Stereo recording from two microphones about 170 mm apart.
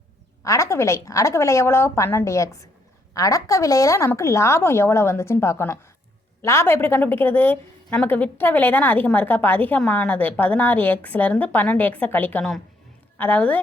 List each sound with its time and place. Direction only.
0.4 s a woman's voice: 20° left (ahead or behind)